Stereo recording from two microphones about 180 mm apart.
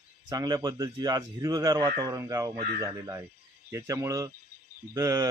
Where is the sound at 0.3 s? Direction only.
20° right (ahead or behind).